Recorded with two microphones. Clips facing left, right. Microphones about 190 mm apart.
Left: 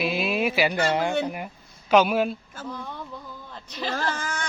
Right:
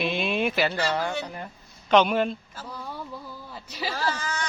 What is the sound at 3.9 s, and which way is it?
Speech, 50° left (ahead or behind).